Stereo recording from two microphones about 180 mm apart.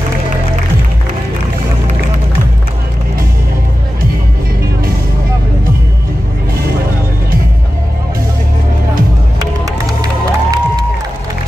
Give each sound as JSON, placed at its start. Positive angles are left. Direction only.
{"t": 10.0, "sound": "music", "side_deg": -20}